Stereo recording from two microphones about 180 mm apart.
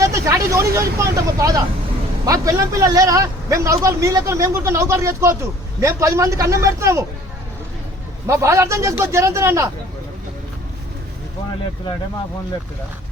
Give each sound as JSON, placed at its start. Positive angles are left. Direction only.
{"t": 0.0, "sound": "a man's voice", "side_deg": -15}
{"t": 8.3, "sound": "a man's voice", "side_deg": -15}